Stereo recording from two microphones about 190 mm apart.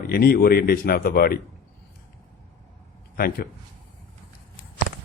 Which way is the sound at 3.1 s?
50° left (ahead or behind).